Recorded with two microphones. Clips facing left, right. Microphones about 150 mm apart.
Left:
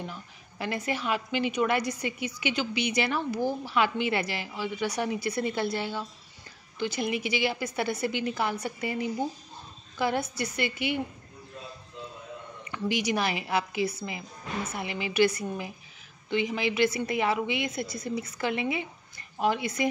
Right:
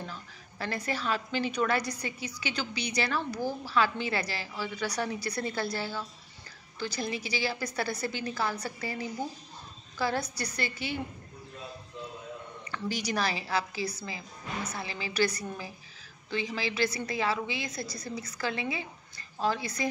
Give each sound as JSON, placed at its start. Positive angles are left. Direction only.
{"t": 0.0, "sound": "a woman's voice", "side_deg": 15}
{"t": 12.7, "sound": "a woman's voice", "side_deg": 20}